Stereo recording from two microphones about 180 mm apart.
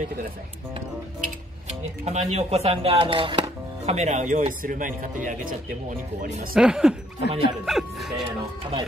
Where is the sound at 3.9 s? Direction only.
40° right (ahead or behind).